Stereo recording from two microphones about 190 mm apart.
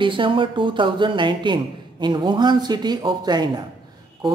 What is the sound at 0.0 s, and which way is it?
Speech, 25° right (ahead or behind).